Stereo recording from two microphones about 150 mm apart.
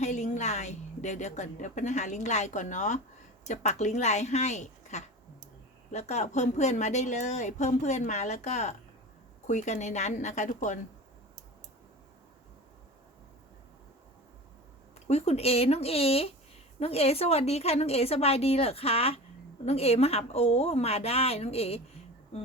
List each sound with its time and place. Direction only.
0.0 s a woman's voice: 50° left (ahead or behind)
15.0 s a woman's voice: 45° left (ahead or behind)